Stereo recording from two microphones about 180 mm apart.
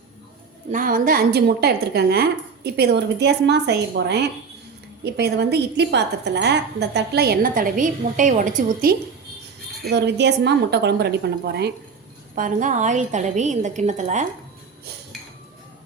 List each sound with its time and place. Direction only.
0.7 s a woman's voice: 50° right (ahead or behind)
9.9 s a woman's voice: 70° right (ahead or behind)
12.3 s a woman's voice: 50° right (ahead or behind)